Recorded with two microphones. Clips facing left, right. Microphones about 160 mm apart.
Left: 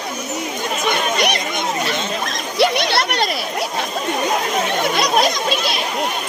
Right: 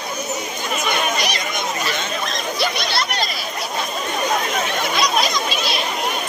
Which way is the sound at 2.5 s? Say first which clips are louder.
Left 8 dB; 70° left (ahead or behind).